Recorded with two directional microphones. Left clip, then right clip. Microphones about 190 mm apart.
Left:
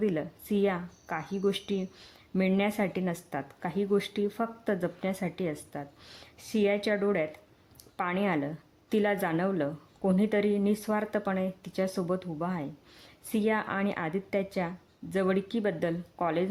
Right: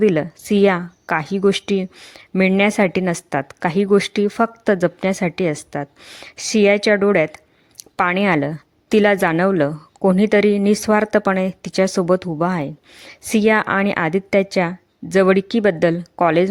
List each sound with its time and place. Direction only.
0.0 s a woman's voice: 40° right (ahead or behind)
2.0 s speech: 30° right (ahead or behind)
2.4 s a woman's voice: 40° right (ahead or behind)
6.2 s a woman's voice: 40° right (ahead or behind)